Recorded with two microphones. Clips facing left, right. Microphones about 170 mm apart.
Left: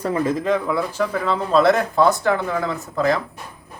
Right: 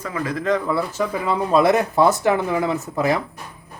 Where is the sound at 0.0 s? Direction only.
30° left (ahead or behind).